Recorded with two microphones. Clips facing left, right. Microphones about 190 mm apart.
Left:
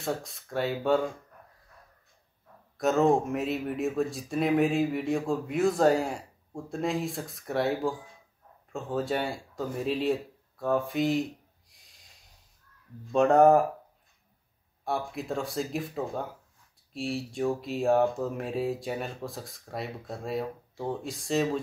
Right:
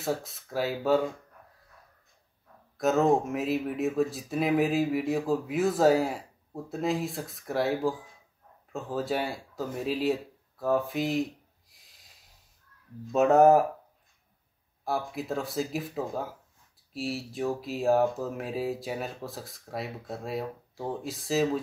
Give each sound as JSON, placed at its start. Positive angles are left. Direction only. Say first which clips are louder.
{"t": 0.0, "sound": "speech", "louder": "right 1 dB", "side_deg": 0}
{"t": 2.8, "sound": "speech", "louder": "even", "side_deg": 0}
{"t": 11.7, "sound": "snort", "louder": "even", "side_deg": 0}
{"t": 13.1, "sound": "speech", "louder": "even", "side_deg": -5}
{"t": 14.9, "sound": "speech", "louder": "even", "side_deg": 0}